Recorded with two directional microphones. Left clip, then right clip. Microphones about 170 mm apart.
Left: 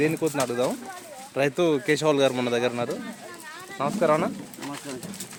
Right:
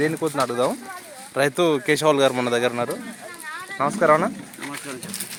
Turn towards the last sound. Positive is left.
turn(degrees=-30)  # may be behind; listen again after turning